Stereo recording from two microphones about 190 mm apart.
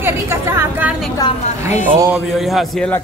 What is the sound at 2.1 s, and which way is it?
Speech, centre (ahead or behind).